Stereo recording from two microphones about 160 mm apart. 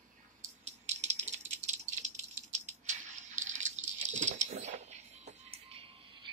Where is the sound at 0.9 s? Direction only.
45° right (ahead or behind).